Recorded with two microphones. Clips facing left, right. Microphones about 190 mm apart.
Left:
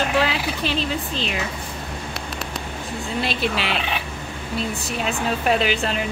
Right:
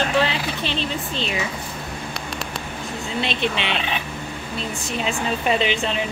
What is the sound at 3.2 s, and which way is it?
Speech, 5° left (ahead or behind).